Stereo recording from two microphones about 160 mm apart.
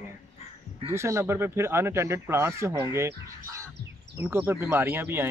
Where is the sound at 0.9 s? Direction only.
15° right (ahead or behind).